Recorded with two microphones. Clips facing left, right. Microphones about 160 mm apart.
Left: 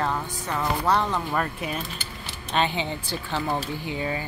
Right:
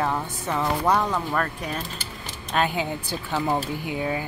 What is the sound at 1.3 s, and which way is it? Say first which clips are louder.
Speech: even; 10° left (ahead or behind).